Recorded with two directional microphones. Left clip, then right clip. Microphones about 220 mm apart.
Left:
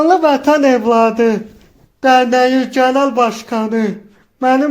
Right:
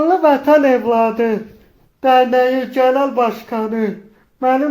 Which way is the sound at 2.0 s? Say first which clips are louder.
Left 2 dB; 40° left (ahead or behind).